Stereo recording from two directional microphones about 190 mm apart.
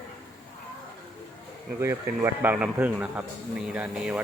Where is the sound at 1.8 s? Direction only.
15° right (ahead or behind).